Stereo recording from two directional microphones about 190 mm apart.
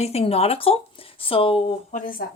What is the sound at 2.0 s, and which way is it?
Speech, 45° left (ahead or behind).